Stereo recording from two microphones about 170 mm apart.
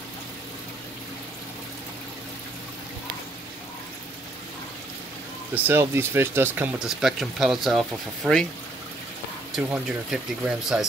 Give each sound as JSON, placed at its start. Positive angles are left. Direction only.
{"t": 5.5, "sound": "speech", "side_deg": -15}
{"t": 9.6, "sound": "speech", "side_deg": -5}